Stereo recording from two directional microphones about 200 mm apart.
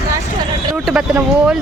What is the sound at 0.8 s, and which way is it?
Speech, 5° right (ahead or behind).